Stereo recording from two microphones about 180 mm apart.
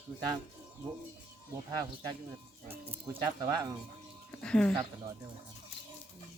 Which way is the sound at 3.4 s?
20° right (ahead or behind).